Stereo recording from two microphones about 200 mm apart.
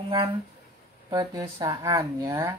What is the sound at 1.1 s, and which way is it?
Speech, 20° right (ahead or behind).